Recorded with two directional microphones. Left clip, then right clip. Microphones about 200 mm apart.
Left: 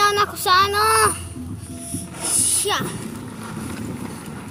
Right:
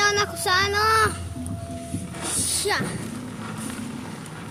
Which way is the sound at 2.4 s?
20° left (ahead or behind).